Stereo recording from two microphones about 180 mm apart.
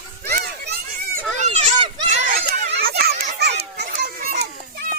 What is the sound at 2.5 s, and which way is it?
Children playing, 60° right (ahead or behind).